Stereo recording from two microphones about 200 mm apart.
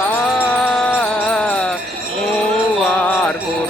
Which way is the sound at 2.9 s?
10° left (ahead or behind).